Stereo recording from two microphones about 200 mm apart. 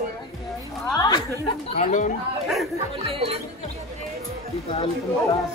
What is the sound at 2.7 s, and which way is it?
Speech, 30° right (ahead or behind).